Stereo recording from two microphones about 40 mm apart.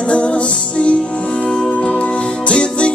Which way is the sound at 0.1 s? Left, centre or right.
Left.